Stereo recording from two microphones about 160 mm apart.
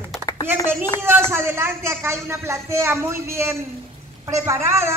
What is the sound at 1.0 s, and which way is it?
Speech, 15° right (ahead or behind).